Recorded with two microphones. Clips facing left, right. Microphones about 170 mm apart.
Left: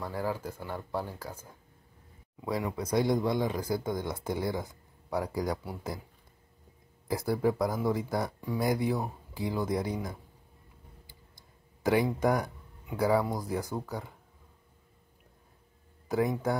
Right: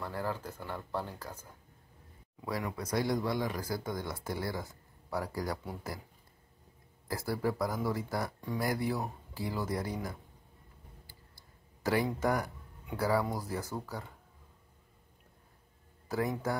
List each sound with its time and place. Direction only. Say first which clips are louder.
0.0 s speech: left 3 dB; 10° left (ahead or behind)
7.1 s speech: left 5 dB; 20° left (ahead or behind)
11.1 s a sound: left 1 dB; 15° left (ahead or behind)
12.2 s speech: left 4 dB; 15° left (ahead or behind)
16.1 s speech: left 4 dB; 15° left (ahead or behind)